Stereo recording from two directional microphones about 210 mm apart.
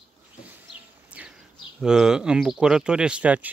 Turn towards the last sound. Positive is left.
turn(degrees=-5)  # may be behind; listen again after turning